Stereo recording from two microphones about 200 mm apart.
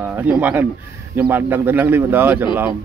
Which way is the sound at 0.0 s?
10° right (ahead or behind).